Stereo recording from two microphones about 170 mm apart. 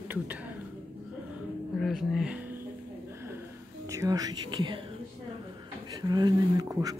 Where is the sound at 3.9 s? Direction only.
20° right (ahead or behind).